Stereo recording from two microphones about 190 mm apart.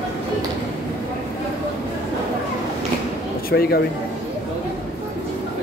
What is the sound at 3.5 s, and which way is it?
Speech, 55° left (ahead or behind).